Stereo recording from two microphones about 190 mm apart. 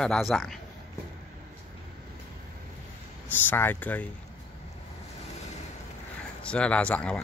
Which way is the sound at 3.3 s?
10° left (ahead or behind).